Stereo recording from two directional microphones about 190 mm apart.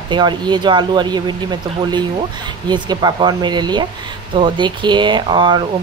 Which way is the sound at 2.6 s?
25° right (ahead or behind).